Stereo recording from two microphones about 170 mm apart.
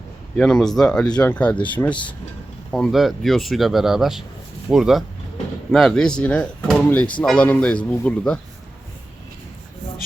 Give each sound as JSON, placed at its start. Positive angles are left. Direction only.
{"t": 0.3, "sound": "speech", "side_deg": 5}
{"t": 2.7, "sound": "speech", "side_deg": 0}